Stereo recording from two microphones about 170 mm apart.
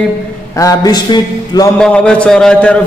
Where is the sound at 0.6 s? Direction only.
20° left (ahead or behind).